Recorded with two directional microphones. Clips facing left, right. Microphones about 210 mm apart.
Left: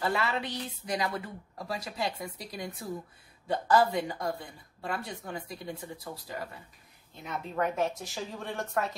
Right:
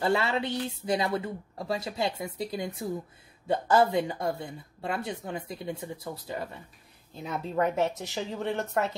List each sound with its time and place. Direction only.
0.0 s speech: 30° right (ahead or behind)